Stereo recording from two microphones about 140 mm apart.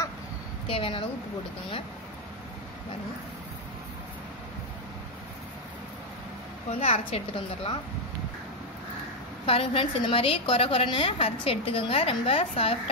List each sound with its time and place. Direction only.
0.7 s a woman's voice: 40° left (ahead or behind)
6.7 s a woman's voice: 45° left (ahead or behind)
9.5 s a woman's voice: 40° left (ahead or behind)